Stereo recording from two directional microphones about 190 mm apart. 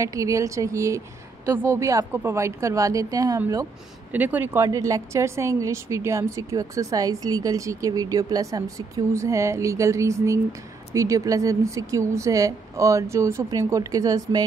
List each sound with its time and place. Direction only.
0.0 s a woman's voice: 15° right (ahead or behind)